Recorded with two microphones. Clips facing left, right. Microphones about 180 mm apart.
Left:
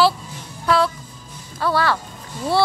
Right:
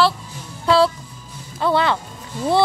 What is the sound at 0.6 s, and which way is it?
Speech, 30° right (ahead or behind).